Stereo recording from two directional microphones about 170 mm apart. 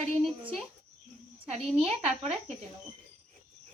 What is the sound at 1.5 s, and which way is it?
Speech, 35° right (ahead or behind).